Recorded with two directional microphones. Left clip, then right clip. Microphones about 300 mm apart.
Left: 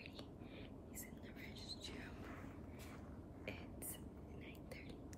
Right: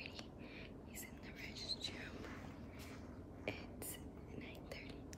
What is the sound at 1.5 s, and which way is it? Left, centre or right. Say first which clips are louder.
Whispering: right 8 dB; centre.